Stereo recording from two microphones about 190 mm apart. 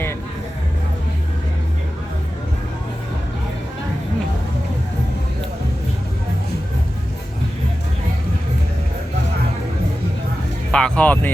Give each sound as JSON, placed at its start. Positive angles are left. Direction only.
{"t": 10.7, "sound": "speech", "side_deg": 5}